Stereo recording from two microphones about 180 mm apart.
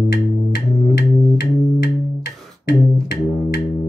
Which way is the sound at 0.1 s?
65° left (ahead or behind).